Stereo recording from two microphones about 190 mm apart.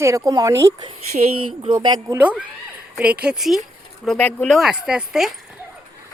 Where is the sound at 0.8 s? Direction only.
35° right (ahead or behind).